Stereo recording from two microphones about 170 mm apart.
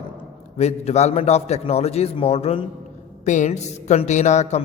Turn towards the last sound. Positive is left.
turn(degrees=45)  # may be behind; listen again after turning